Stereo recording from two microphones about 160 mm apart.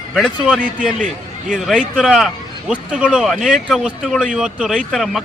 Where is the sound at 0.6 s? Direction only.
55° right (ahead or behind).